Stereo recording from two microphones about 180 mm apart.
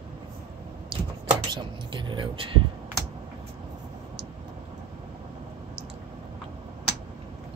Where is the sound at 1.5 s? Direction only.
25° right (ahead or behind).